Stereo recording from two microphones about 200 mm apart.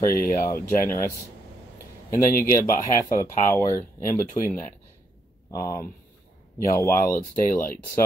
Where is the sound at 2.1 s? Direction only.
45° left (ahead or behind).